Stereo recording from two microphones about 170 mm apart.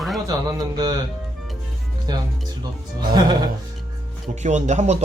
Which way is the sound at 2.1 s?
25° right (ahead or behind).